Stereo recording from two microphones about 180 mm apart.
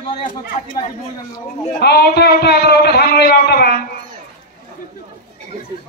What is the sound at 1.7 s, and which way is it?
A man's voice, 60° left (ahead or behind).